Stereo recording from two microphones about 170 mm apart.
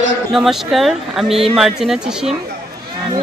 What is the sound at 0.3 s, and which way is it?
Speech, centre (ahead or behind).